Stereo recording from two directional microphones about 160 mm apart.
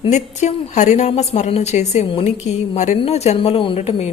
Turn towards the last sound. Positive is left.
turn(degrees=45)  # may be behind; listen again after turning